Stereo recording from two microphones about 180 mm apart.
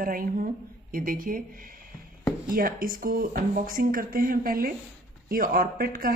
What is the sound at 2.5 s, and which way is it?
Speech, 55° right (ahead or behind).